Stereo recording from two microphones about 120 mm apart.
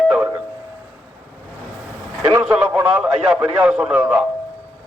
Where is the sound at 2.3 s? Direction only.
15° right (ahead or behind).